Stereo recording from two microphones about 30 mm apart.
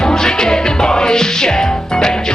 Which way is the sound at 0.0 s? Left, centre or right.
Left.